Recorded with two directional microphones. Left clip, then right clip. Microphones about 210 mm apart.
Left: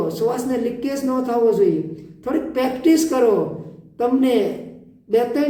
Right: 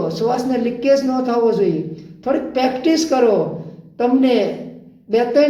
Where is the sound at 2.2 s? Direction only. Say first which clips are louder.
Right 3 dB; 15° left (ahead or behind).